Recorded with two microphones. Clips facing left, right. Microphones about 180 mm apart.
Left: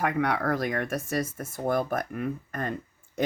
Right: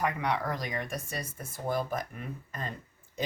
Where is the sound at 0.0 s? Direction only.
60° left (ahead or behind).